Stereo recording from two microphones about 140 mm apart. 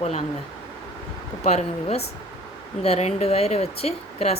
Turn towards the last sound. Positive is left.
turn(degrees=45)  # may be behind; listen again after turning